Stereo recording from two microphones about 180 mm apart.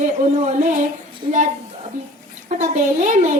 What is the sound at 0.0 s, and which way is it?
Speech, 45° right (ahead or behind).